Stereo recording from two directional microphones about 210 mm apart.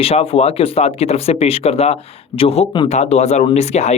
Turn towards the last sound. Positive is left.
turn(degrees=30)  # may be behind; listen again after turning